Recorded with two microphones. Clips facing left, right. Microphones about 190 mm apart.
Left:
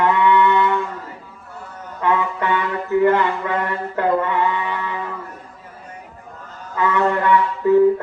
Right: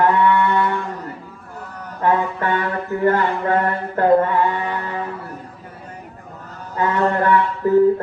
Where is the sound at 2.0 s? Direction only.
45° right (ahead or behind).